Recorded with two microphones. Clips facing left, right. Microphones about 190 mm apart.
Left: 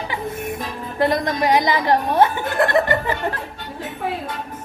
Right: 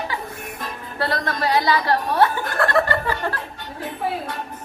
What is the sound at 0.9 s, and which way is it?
Speech, 15° left (ahead or behind).